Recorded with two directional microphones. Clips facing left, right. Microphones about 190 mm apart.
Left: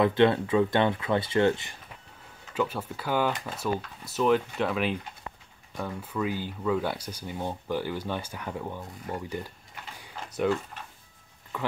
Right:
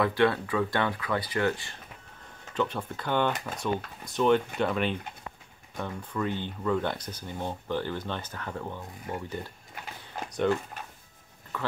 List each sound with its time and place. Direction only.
0.0 s speech: 20° left (ahead or behind)
2.5 s speech: 5° left (ahead or behind)
9.9 s a sound: 5° left (ahead or behind)
11.5 s speech: 15° left (ahead or behind)